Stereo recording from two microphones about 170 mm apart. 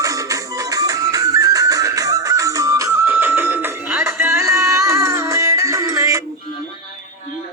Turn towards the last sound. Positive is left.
turn(degrees=-20)  # may be behind; listen again after turning